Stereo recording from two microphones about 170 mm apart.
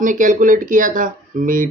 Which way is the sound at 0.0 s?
50° right (ahead or behind).